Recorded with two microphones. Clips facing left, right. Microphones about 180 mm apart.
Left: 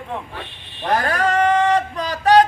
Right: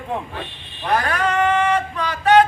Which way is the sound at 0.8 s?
40° left (ahead or behind).